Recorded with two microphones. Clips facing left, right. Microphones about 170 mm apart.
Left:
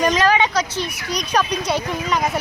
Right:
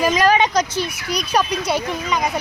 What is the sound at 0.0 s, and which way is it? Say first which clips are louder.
A woman's voice: right 1 dB; 10° right (ahead or behind).